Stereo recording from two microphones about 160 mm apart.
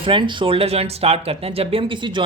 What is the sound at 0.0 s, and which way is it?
Speech, 30° right (ahead or behind).